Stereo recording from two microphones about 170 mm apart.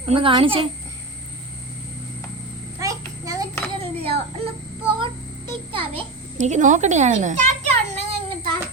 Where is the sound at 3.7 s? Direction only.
35° right (ahead or behind).